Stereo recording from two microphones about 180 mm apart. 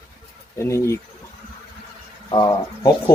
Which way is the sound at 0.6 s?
15° left (ahead or behind).